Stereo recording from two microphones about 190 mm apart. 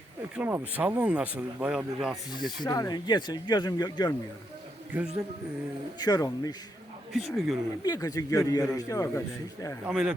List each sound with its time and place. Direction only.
0.3 s speech: 10° right (ahead or behind)
2.6 s speech: 20° left (ahead or behind)
4.9 s speech: 10° right (ahead or behind)
6.0 s speech: 20° left (ahead or behind)
7.1 s speech: centre (ahead or behind)
7.9 s speech: 20° left (ahead or behind)
9.8 s speech: 5° right (ahead or behind)